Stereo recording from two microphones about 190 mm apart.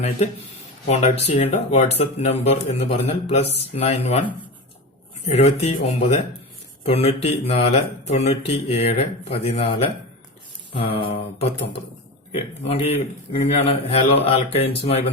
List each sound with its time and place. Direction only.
0.9 s speech: 35° left (ahead or behind)
5.2 s speech: 35° left (ahead or behind)